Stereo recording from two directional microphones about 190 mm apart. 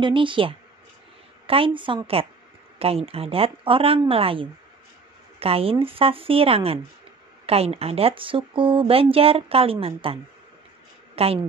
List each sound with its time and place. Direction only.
0.0 s speech: 25° right (ahead or behind)
11.2 s a woman's voice: 30° right (ahead or behind)